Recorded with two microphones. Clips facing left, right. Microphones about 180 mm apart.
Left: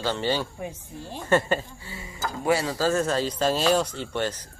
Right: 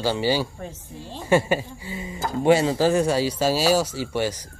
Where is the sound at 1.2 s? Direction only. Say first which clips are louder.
Right 3 dB; 10° right (ahead or behind).